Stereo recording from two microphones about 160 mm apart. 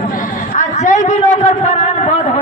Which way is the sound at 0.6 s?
50° left (ahead or behind).